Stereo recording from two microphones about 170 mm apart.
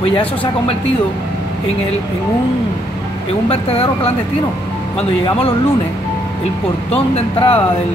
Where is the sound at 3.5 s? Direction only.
35° left (ahead or behind).